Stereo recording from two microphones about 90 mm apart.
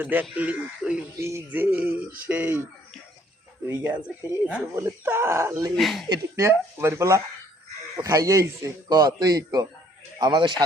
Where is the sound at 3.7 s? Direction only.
20° right (ahead or behind).